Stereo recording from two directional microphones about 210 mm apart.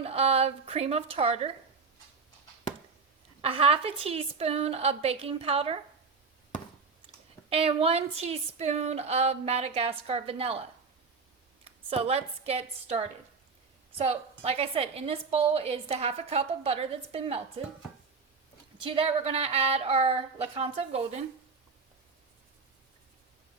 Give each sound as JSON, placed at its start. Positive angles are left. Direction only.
{"t": 0.0, "sound": "a woman's voice", "side_deg": -30}
{"t": 3.4, "sound": "a woman's voice", "side_deg": -30}
{"t": 7.1, "sound": "a sound", "side_deg": -25}
{"t": 7.5, "sound": "a woman's voice", "side_deg": -30}
{"t": 18.8, "sound": "a woman's voice", "side_deg": -25}